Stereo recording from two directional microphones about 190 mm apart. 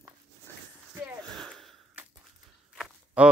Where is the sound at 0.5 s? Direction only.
10° left (ahead or behind).